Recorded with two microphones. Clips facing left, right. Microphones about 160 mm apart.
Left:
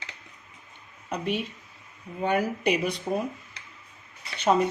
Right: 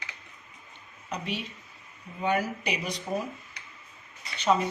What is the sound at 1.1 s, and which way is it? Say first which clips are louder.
Speech: left 5 dB; 50° left (ahead or behind).